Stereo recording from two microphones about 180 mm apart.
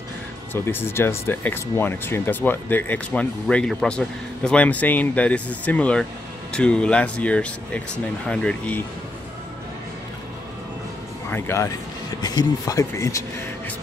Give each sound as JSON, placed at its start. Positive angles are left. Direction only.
{"t": 0.5, "sound": "speech", "side_deg": 10}
{"t": 11.2, "sound": "speech", "side_deg": 15}